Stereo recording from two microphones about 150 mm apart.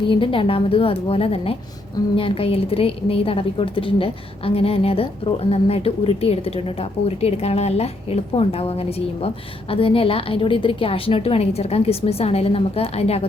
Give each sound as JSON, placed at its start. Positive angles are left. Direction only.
{"t": 0.1, "sound": "a woman's voice", "side_deg": 35}